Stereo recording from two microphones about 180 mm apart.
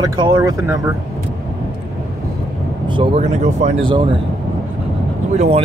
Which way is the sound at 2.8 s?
25° right (ahead or behind).